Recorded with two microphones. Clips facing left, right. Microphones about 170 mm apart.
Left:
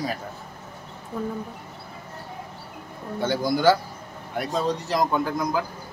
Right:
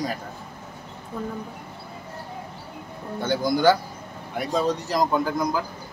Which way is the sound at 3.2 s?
5° left (ahead or behind).